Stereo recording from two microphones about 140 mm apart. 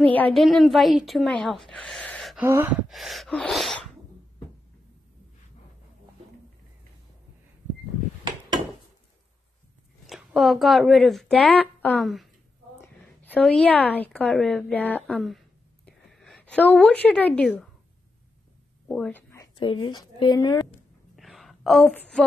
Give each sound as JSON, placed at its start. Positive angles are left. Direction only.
{"t": 0.0, "sound": "a woman's voice", "side_deg": 10}
{"t": 2.3, "sound": "speech", "side_deg": -15}
{"t": 2.9, "sound": "a woman's voice", "side_deg": 0}
{"t": 10.0, "sound": "a woman's voice", "side_deg": 0}
{"t": 12.8, "sound": "a sound", "side_deg": 15}
{"t": 13.4, "sound": "a woman's voice", "side_deg": 5}
{"t": 15.1, "sound": "a sound", "side_deg": 0}
{"t": 18.9, "sound": "a woman's voice", "side_deg": 10}
{"t": 19.5, "sound": "speech", "side_deg": 40}
{"t": 21.2, "sound": "a sound", "side_deg": 0}